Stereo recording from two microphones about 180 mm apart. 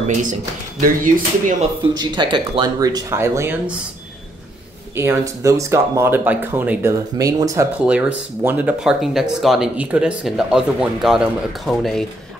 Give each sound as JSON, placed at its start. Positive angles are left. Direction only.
{"t": 0.0, "sound": "speech", "side_deg": -45}
{"t": 2.0, "sound": "speech", "side_deg": -25}
{"t": 4.9, "sound": "speech", "side_deg": -15}
{"t": 7.7, "sound": "speech", "side_deg": -5}